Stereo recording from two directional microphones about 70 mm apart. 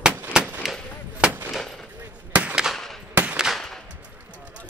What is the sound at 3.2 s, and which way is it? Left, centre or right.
Firecracker, centre.